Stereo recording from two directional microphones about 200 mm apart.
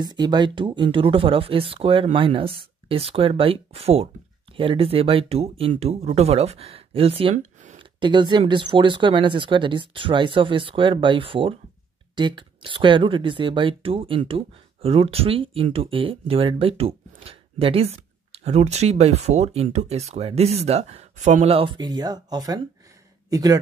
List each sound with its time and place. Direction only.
0.0 s a man's voice: 20° right (ahead or behind)